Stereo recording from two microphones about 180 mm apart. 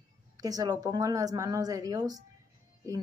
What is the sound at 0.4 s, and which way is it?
Speech, 20° right (ahead or behind).